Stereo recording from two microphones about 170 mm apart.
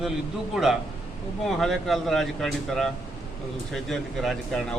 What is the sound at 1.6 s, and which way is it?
Speech, centre (ahead or behind).